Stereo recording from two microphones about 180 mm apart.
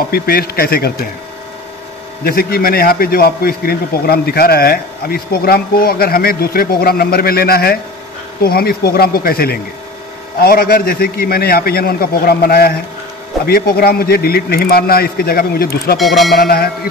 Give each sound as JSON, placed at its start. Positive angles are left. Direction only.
{"t": 0.1, "sound": "a man's voice", "side_deg": 60}
{"t": 2.2, "sound": "a man's voice", "side_deg": 55}
{"t": 16.0, "sound": "speech", "side_deg": 0}
{"t": 16.3, "sound": "a man's voice", "side_deg": 60}